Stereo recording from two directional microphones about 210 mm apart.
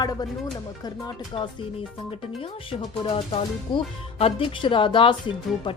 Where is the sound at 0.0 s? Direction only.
20° left (ahead or behind).